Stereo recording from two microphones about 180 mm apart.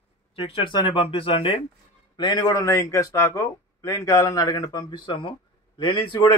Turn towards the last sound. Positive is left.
turn(degrees=25)  # may be behind; listen again after turning